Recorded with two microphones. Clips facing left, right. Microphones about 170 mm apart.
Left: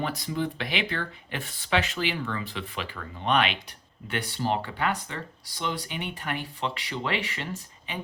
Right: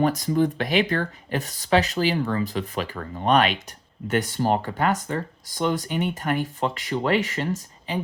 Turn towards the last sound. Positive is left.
turn(degrees=-40)  # may be behind; listen again after turning